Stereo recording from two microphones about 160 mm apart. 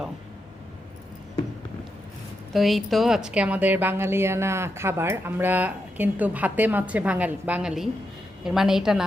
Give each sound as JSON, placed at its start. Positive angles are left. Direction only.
{"t": 2.5, "sound": "a woman's voice", "side_deg": 0}